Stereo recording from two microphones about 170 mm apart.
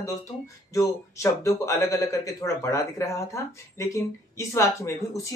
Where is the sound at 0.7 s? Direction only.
20° left (ahead or behind).